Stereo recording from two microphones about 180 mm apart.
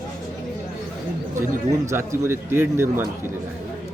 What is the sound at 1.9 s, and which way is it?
A man's voice, 15° right (ahead or behind).